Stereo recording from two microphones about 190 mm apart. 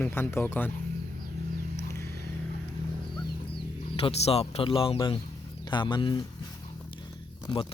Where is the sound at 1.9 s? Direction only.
15° left (ahead or behind).